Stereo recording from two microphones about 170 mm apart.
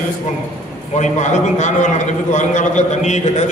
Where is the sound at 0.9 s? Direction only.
45° left (ahead or behind).